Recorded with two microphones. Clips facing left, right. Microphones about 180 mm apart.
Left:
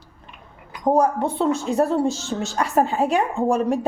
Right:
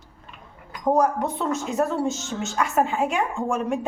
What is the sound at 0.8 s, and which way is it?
A woman's voice, 30° left (ahead or behind).